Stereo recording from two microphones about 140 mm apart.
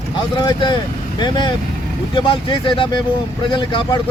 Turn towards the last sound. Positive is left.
turn(degrees=35)  # may be behind; listen again after turning